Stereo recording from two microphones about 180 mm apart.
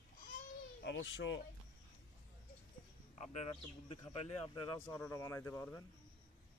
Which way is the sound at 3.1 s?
40° left (ahead or behind).